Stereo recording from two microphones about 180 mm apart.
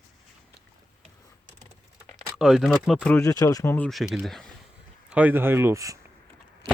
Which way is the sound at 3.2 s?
20° left (ahead or behind).